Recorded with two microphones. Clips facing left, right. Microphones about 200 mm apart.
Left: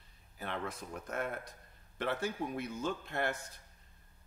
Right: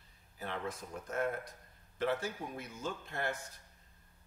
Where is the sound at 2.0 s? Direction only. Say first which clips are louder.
Even; 60° left (ahead or behind).